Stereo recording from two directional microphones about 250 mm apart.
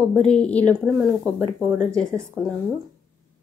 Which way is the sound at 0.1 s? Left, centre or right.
Centre.